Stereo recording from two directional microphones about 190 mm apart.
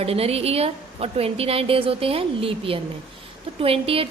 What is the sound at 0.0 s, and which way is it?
A woman's voice, 30° right (ahead or behind).